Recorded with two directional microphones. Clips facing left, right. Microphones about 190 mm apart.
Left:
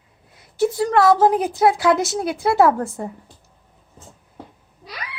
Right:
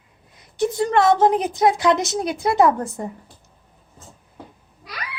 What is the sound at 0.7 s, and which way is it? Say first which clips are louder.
A child's voice: left 1 dB; 5° left (ahead or behind).